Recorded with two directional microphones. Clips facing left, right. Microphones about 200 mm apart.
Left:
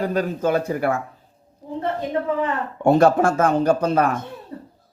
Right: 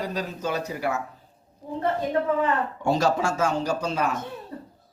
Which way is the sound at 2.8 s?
55° left (ahead or behind).